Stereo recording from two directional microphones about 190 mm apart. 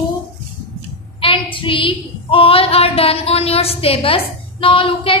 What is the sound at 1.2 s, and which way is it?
Child singing, 25° left (ahead or behind).